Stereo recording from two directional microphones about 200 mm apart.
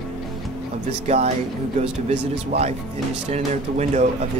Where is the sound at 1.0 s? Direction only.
35° right (ahead or behind).